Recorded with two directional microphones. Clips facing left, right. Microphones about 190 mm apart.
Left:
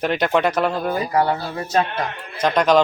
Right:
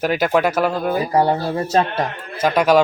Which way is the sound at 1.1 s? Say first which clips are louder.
Right 4 dB; 35° right (ahead or behind).